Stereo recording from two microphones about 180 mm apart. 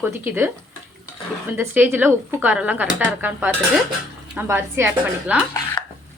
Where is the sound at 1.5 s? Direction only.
10° right (ahead or behind).